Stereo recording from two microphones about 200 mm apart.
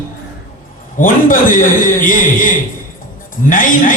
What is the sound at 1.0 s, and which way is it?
Speech, 40° left (ahead or behind).